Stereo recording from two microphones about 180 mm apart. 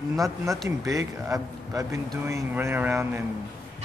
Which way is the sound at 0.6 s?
20° right (ahead or behind).